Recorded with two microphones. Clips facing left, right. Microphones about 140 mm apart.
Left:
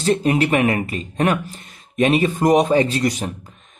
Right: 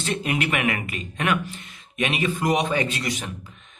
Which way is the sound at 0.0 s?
35° left (ahead or behind).